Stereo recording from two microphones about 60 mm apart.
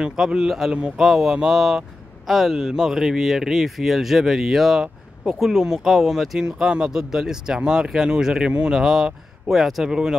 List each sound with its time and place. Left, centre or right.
0.0 s speech: centre
1.0 s speech: centre